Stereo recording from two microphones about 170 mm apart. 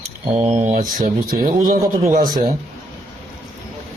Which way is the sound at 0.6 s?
45° right (ahead or behind).